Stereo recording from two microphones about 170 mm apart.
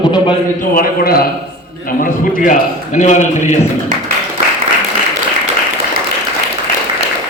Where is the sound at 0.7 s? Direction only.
60° left (ahead or behind).